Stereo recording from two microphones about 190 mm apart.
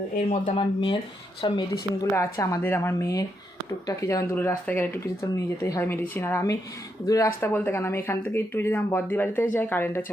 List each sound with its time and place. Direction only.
0.3 s speech: 30° left (ahead or behind)
2.0 s speech: 15° left (ahead or behind)